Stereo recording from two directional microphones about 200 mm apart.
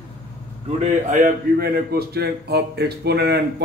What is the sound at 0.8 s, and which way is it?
A man's voice, 40° right (ahead or behind).